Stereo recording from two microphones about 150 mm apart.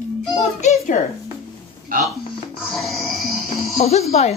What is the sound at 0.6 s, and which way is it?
Speech, 55° left (ahead or behind).